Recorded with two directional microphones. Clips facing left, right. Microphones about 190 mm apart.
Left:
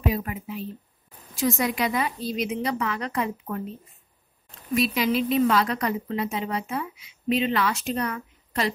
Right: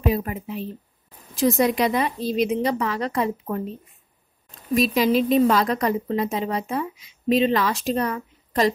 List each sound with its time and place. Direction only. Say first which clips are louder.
0.1 s a woman's voice: right 4 dB; 35° right (ahead or behind)
4.7 s a woman's voice: right 4 dB; 40° right (ahead or behind)